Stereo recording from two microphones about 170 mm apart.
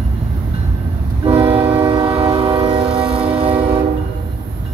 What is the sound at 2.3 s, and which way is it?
Train, 30° right (ahead or behind).